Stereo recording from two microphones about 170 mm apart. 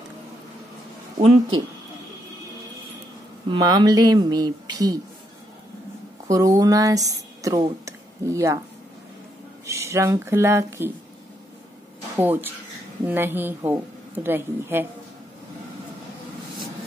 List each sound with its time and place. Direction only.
3.4 s speech: 25° right (ahead or behind)
6.2 s speech: 20° right (ahead or behind)
9.7 s speech: 15° right (ahead or behind)
12.2 s speech: 10° right (ahead or behind)